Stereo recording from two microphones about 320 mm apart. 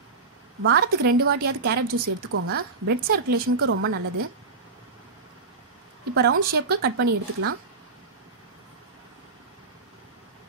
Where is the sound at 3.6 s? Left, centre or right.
Right.